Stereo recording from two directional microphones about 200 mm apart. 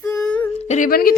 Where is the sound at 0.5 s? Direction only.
35° left (ahead or behind).